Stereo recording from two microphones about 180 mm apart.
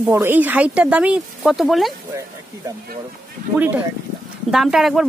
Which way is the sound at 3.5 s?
10° right (ahead or behind).